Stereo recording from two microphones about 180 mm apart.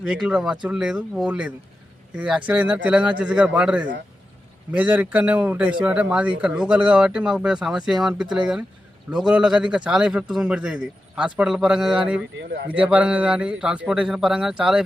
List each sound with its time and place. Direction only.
0.0 s speech: 5° right (ahead or behind)
12.4 s a man's voice: 75° right (ahead or behind)
12.7 s speech: 10° right (ahead or behind)